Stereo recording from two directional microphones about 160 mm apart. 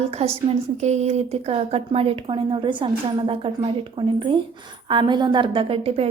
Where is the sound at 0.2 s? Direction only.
40° right (ahead or behind).